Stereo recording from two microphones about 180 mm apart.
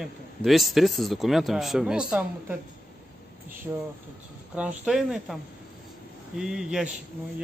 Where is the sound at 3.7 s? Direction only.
10° right (ahead or behind).